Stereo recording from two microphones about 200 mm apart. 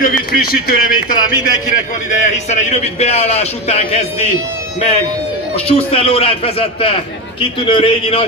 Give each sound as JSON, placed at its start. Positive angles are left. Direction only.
{"t": 0.0, "sound": "speech", "side_deg": 45}
{"t": 1.1, "sound": "a man's voice", "side_deg": 20}
{"t": 2.0, "sound": "a man's voice", "side_deg": 35}
{"t": 5.7, "sound": "a man's voice", "side_deg": 30}